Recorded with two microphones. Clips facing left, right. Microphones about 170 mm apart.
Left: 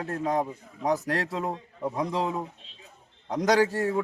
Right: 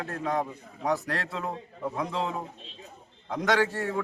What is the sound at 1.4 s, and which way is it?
Speech, 20° left (ahead or behind).